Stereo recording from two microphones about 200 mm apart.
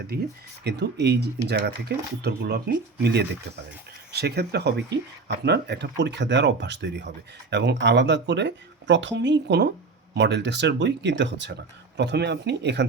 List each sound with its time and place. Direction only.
0.1 s speech: 50° right (ahead or behind)